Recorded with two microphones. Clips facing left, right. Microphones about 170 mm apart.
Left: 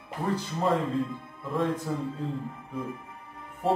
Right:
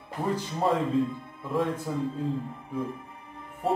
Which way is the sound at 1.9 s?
10° right (ahead or behind).